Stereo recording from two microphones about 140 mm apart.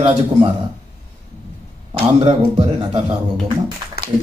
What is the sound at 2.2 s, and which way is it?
Speech, 45° right (ahead or behind).